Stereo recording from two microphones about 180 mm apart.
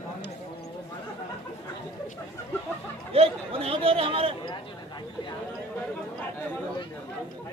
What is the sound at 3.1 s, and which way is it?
Speech, 35° right (ahead or behind).